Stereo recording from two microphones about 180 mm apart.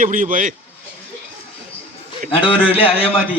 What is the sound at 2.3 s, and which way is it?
Speech, 30° left (ahead or behind).